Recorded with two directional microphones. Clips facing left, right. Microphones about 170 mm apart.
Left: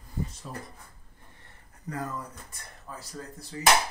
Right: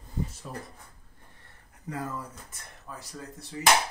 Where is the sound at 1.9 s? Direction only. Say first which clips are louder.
Even; 10° right (ahead or behind).